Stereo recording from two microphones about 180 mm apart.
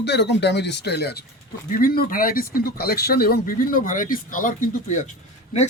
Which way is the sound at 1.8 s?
55° left (ahead or behind).